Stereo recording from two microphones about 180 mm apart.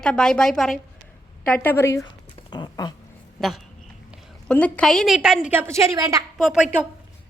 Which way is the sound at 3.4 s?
Centre (ahead or behind).